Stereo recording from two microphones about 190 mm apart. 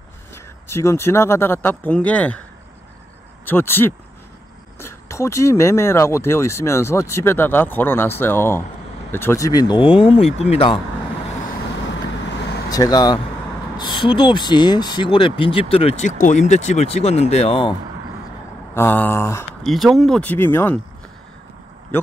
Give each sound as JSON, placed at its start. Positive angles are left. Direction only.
{"t": 0.7, "sound": "speech", "side_deg": 15}
{"t": 3.4, "sound": "speech", "side_deg": 10}
{"t": 12.4, "sound": "vehicle", "side_deg": 60}
{"t": 12.6, "sound": "speech", "side_deg": 20}
{"t": 18.8, "sound": "speech", "side_deg": 10}
{"t": 19.6, "sound": "speech", "side_deg": 0}